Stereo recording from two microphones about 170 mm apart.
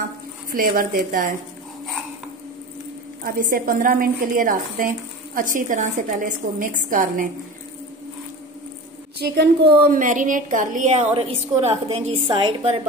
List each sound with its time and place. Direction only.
0.5 s a woman's voice: 55° right (ahead or behind)
3.3 s a woman's voice: 55° right (ahead or behind)
9.2 s a woman's voice: 75° right (ahead or behind); by 12.8 s 30° right (ahead or behind)